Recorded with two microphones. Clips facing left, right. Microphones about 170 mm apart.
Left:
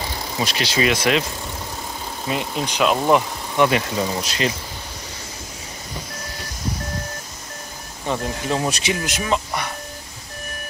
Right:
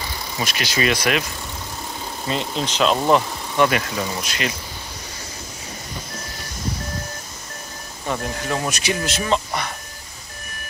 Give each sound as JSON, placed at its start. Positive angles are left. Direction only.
{"t": 0.4, "sound": "speech", "side_deg": 30}
{"t": 2.2, "sound": "speech", "side_deg": 10}
{"t": 4.2, "sound": "speech", "side_deg": 35}
{"t": 8.1, "sound": "speech", "side_deg": 20}
{"t": 9.0, "sound": "speech", "side_deg": 10}